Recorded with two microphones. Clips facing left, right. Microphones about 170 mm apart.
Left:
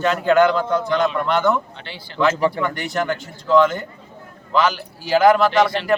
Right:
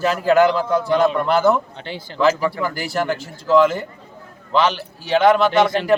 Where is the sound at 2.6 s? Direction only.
5° right (ahead or behind).